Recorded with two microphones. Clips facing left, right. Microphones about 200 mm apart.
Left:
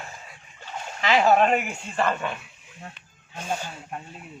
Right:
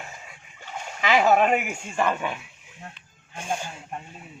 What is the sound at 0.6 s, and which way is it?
Speech, 15° right (ahead or behind).